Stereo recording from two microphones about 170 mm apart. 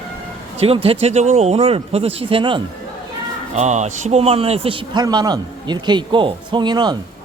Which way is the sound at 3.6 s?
40° right (ahead or behind).